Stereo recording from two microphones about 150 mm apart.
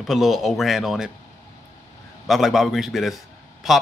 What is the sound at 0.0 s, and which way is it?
Speech, centre (ahead or behind).